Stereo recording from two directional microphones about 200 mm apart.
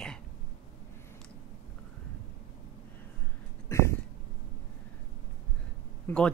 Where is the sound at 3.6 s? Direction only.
15° left (ahead or behind).